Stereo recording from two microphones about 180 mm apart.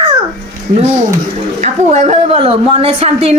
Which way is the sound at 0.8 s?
40° right (ahead or behind).